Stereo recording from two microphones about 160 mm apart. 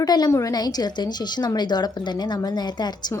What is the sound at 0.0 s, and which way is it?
A woman's voice, 25° left (ahead or behind).